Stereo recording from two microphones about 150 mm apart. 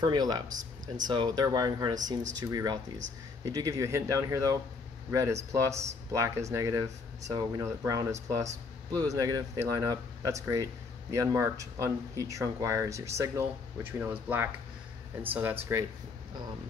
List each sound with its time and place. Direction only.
0.0 s speech: 30° right (ahead or behind)